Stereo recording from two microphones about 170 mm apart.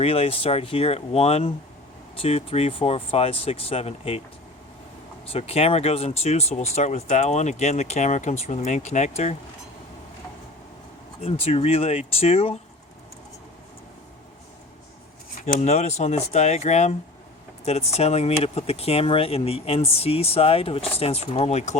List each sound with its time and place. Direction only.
0.0 s speech: 35° left (ahead or behind)
5.3 s speech: 35° left (ahead or behind)
11.2 s speech: 35° left (ahead or behind)
15.4 s speech: 45° left (ahead or behind)